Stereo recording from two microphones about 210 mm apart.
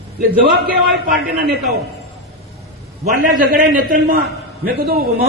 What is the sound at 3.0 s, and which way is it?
A man's voice, 45° right (ahead or behind).